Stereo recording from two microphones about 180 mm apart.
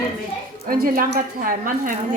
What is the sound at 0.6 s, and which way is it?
A woman's voice, 55° right (ahead or behind).